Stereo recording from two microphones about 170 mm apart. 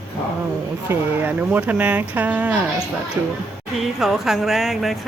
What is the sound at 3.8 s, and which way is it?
Speech, centre (ahead or behind).